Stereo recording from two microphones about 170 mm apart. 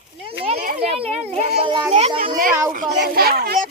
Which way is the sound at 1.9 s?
35° right (ahead or behind).